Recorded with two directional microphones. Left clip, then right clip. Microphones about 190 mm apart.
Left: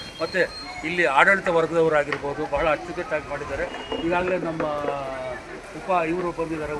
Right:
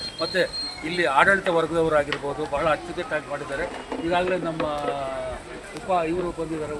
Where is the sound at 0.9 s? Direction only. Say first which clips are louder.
Left 1 dB; 5° left (ahead or behind).